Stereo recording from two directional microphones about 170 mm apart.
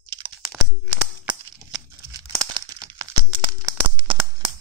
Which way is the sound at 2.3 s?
25° right (ahead or behind).